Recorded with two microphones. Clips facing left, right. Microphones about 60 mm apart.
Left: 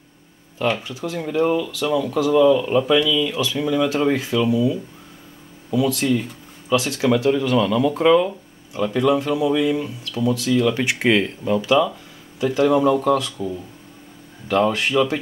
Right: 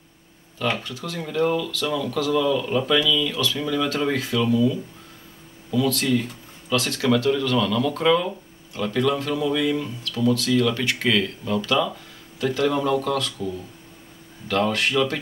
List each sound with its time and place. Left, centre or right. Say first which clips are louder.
0.8 s speech: left 5 dB; centre
11.6 s speech: left 6 dB; centre
14.5 s speech: left 3 dB; centre